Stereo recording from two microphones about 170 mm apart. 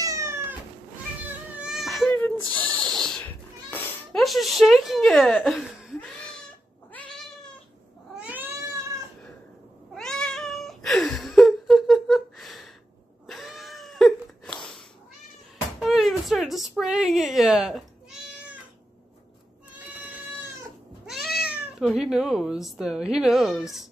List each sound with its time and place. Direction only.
0.0 s cat: 20° right (ahead or behind)
2.0 s music: 10° left (ahead or behind)
4.2 s a sound: centre (ahead or behind)
8.2 s cat: 10° right (ahead or behind)
9.9 s cat: 5° left (ahead or behind)
15.8 s a sound: centre (ahead or behind)
21.0 s cat: centre (ahead or behind)